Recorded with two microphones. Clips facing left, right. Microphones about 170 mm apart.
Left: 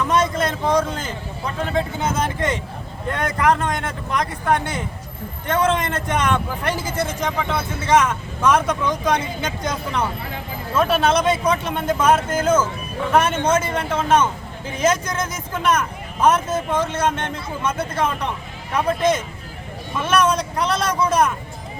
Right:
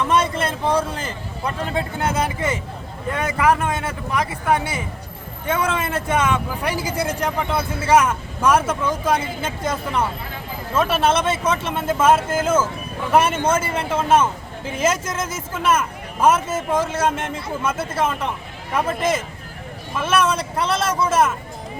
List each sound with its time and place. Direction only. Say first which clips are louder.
0.3 s a man's voice: left 1 dB; 5° right (ahead or behind)